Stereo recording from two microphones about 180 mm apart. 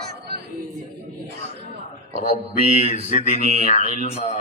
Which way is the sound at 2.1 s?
45° left (ahead or behind).